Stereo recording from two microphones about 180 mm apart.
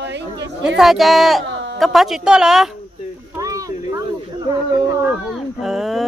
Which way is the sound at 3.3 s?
20° right (ahead or behind).